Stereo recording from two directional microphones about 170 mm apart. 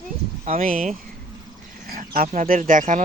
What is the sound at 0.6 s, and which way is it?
Speech, 55° right (ahead or behind).